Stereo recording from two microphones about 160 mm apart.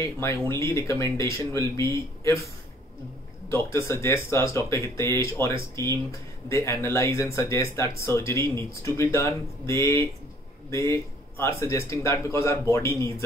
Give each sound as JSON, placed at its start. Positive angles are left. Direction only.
{"t": 0.0, "sound": "speech", "side_deg": 15}
{"t": 3.4, "sound": "speech", "side_deg": 15}
{"t": 6.5, "sound": "speech", "side_deg": 15}